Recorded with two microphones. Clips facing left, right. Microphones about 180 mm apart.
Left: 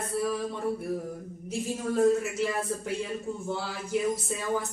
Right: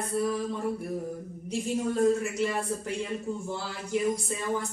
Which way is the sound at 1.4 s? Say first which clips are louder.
Right 2 dB; 5° left (ahead or behind).